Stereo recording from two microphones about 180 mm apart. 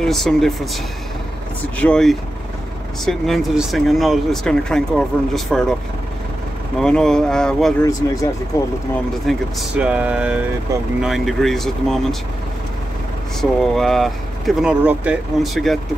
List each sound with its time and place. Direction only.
0.0 s speech: centre (ahead or behind)
1.8 s speech: 5° left (ahead or behind)
6.8 s speech: 5° left (ahead or behind)
8.0 s speech: 20° left (ahead or behind)
9.3 s speech: 5° right (ahead or behind)
13.4 s speech: centre (ahead or behind)